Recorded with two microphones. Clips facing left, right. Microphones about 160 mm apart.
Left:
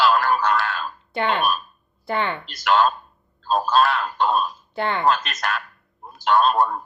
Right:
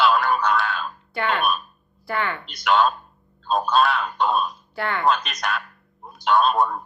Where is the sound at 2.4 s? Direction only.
Centre (ahead or behind).